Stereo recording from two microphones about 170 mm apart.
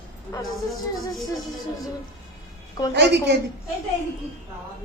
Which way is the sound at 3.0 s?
80° right.